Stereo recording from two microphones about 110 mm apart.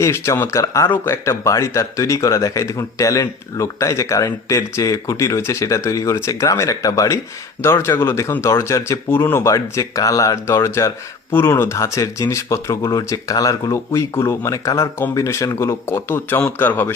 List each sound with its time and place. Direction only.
0.0 s speech: 25° left (ahead or behind)